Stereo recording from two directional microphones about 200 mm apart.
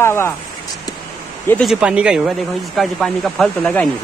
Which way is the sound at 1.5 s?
Centre (ahead or behind).